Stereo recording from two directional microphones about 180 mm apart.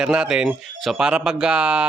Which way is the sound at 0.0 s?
5° right (ahead or behind).